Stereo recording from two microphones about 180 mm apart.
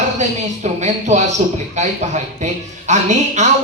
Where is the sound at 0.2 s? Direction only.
40° right (ahead or behind).